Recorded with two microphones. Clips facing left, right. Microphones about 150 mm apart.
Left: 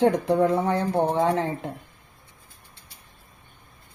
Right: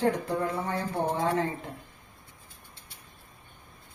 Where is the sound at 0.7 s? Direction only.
70° left (ahead or behind).